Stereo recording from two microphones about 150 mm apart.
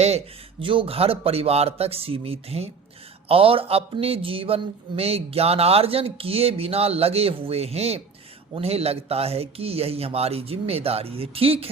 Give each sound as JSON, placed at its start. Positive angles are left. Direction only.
{"t": 0.6, "sound": "speech", "side_deg": -35}